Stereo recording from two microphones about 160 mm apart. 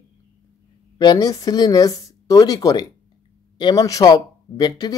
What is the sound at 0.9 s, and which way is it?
Speech, 25° left (ahead or behind).